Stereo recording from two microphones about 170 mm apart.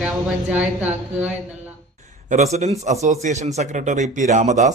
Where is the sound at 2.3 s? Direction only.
40° right (ahead or behind).